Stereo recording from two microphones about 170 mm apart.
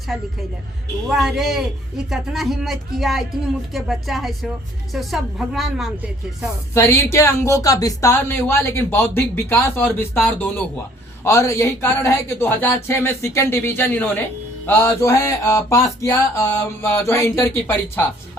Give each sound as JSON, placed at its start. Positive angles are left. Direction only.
{"t": 1.0, "sound": "speech", "side_deg": 0}
{"t": 6.7, "sound": "speech", "side_deg": 15}